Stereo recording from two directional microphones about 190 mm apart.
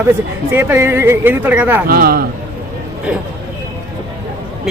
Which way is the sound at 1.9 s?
50° right (ahead or behind).